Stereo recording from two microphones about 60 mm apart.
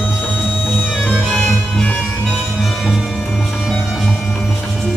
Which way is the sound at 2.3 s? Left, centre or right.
Centre.